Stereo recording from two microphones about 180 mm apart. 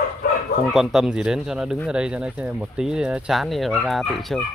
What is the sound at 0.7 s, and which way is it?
Speech, centre (ahead or behind).